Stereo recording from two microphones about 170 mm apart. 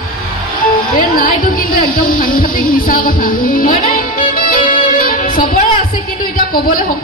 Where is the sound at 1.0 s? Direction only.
55° left (ahead or behind).